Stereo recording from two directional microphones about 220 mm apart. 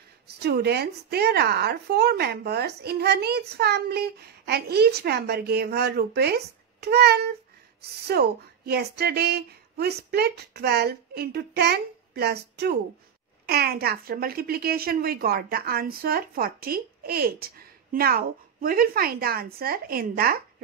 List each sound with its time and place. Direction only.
0.4 s speech: 45° right (ahead or behind)